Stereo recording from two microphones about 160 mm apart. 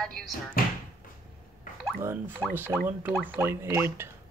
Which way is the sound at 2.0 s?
15° right (ahead or behind).